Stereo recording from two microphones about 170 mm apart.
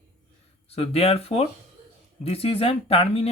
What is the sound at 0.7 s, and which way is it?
Speech, 35° left (ahead or behind).